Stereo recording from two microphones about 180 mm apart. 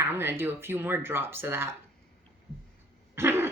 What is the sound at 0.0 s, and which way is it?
Speech, 15° right (ahead or behind).